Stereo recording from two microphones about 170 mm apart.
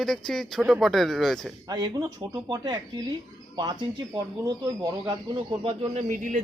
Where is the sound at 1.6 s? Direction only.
20° right (ahead or behind).